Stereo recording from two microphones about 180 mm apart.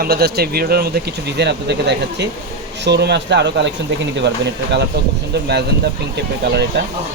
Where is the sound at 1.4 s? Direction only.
70° right (ahead or behind).